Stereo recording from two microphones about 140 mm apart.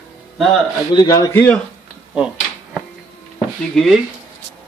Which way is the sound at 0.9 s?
30° left (ahead or behind).